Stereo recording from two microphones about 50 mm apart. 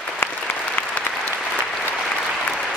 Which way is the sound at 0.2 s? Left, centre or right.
Left.